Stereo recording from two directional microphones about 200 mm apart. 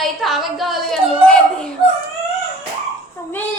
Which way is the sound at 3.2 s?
15° left (ahead or behind).